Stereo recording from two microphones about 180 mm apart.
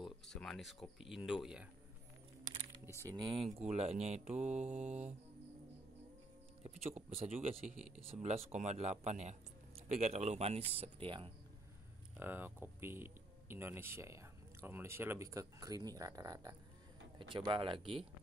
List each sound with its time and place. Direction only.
0.0 s speech: centre (ahead or behind)
3.0 s speech: 20° right (ahead or behind)
3.5 s mantra: 35° right (ahead or behind)
7.0 s mantra: 35° right (ahead or behind)
11.1 s speech: 30° right (ahead or behind)
12.2 s speech: 10° right (ahead or behind); by 18.0 s 30° right (ahead or behind)